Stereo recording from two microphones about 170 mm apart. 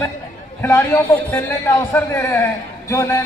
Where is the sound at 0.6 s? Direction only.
15° left (ahead or behind).